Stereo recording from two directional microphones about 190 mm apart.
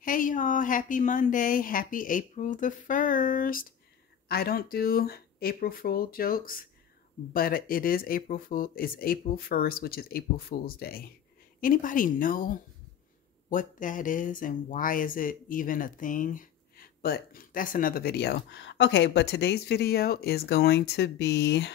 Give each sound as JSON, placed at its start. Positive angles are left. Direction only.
{"t": 0.0, "sound": "speech", "side_deg": 45}